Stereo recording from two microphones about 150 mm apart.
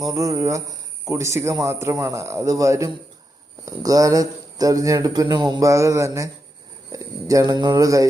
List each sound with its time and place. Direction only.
0.1 s speech: 20° right (ahead or behind)